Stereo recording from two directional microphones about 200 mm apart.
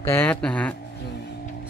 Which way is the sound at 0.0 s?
10° left (ahead or behind).